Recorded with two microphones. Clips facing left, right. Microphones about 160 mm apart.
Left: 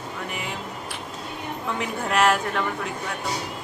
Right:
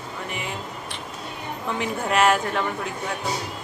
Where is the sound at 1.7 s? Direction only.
Centre (ahead or behind).